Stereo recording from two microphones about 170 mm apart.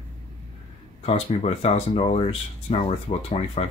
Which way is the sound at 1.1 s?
35° left (ahead or behind).